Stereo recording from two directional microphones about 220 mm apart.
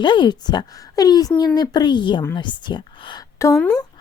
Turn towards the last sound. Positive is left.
turn(degrees=5)  # may be behind; listen again after turning